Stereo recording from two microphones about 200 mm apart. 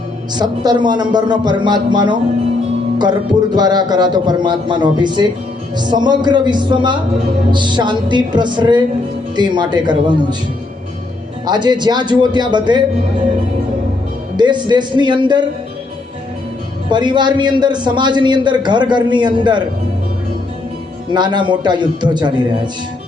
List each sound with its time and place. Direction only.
0.3 s a man's voice: 20° right (ahead or behind)
11.4 s a man's voice: 20° right (ahead or behind)
14.3 s a man's voice: 20° right (ahead or behind)
16.9 s a man's voice: 20° right (ahead or behind)
21.1 s a man's voice: 20° right (ahead or behind)